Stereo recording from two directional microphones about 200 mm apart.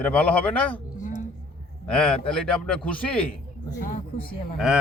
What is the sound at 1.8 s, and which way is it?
A man's voice, 5° left (ahead or behind).